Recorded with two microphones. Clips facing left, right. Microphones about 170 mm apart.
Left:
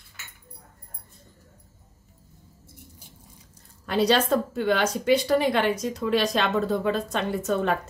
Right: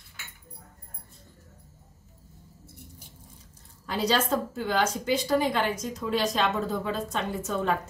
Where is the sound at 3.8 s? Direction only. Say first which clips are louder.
Left 5 dB; 70° left (ahead or behind).